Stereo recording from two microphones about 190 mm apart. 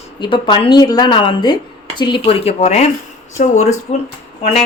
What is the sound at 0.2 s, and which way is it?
A woman's voice, 25° left (ahead or behind).